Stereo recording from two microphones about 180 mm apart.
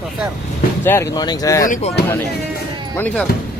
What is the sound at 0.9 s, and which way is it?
Speech, 15° left (ahead or behind).